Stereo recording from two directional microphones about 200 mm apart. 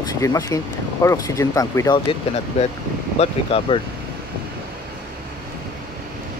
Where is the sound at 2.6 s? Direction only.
30° left (ahead or behind).